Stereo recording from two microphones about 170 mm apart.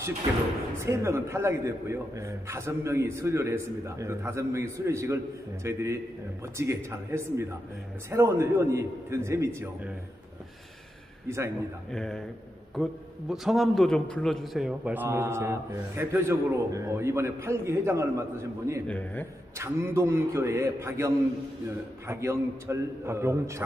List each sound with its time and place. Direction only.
0.7 s a man's voice: 15° right (ahead or behind)
11.2 s a man's voice: 15° right (ahead or behind)
11.9 s a man's voice: 5° left (ahead or behind); by 18.8 s 15° right (ahead or behind)
18.9 s a man's voice: 10° left (ahead or behind)
19.6 s a man's voice: 15° right (ahead or behind)